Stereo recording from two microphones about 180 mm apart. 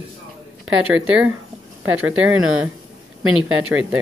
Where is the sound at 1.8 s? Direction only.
90° right.